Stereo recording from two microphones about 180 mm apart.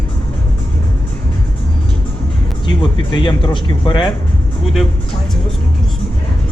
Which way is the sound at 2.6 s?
25° left (ahead or behind).